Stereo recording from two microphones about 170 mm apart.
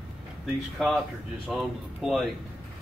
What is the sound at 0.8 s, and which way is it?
Speech, centre (ahead or behind).